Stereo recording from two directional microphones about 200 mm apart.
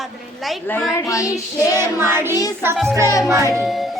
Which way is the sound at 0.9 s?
15° left (ahead or behind).